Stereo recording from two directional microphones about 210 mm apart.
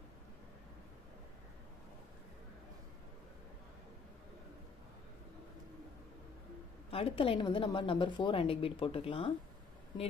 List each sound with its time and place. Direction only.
6.9 s a woman's voice: 25° left (ahead or behind)